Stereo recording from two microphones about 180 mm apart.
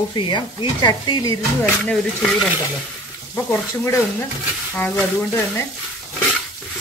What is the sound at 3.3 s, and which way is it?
Speech, 15° left (ahead or behind).